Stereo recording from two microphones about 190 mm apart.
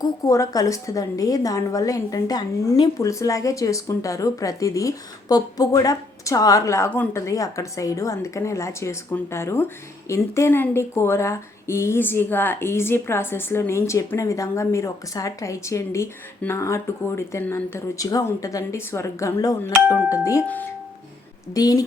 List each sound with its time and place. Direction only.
0.0 s a woman's voice: 20° left (ahead or behind)
19.7 s speech: 10° right (ahead or behind)
20.1 s a woman's voice: 15° left (ahead or behind)